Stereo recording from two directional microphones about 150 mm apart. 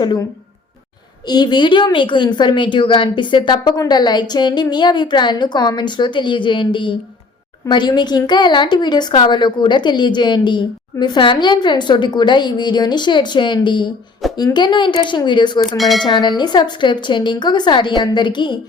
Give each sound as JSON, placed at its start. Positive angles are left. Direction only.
{"t": 1.3, "sound": "a woman's voice", "side_deg": 30}
{"t": 15.8, "sound": "dishes", "side_deg": 0}
{"t": 16.0, "sound": "a woman's voice", "side_deg": 30}